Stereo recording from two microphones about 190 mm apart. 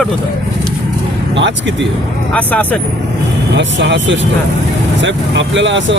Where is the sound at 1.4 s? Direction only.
70° right (ahead or behind).